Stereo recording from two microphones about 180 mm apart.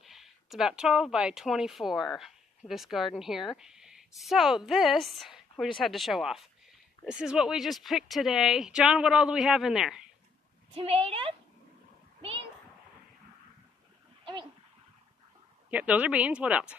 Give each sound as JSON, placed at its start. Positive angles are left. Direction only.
{"t": 0.0, "sound": "a woman's voice", "side_deg": 0}
{"t": 10.7, "sound": "a woman's voice", "side_deg": -35}
{"t": 12.2, "sound": "a sound", "side_deg": -30}
{"t": 15.7, "sound": "speech", "side_deg": -10}